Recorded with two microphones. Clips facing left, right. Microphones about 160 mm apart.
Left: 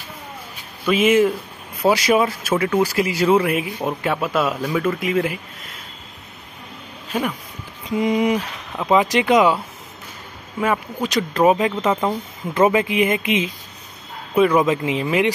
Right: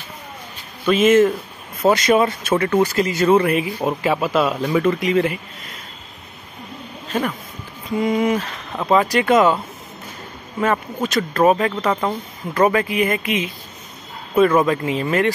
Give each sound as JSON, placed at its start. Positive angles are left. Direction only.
{"t": 0.8, "sound": "speech", "side_deg": 10}
{"t": 7.1, "sound": "speech", "side_deg": 10}
{"t": 10.6, "sound": "speech", "side_deg": 10}
{"t": 14.3, "sound": "a man's voice", "side_deg": 10}